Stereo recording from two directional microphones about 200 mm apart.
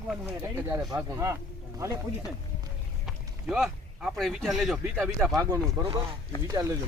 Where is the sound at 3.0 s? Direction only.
Centre (ahead or behind).